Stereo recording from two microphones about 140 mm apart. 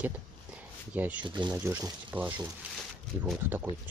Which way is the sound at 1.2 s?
35° right (ahead or behind).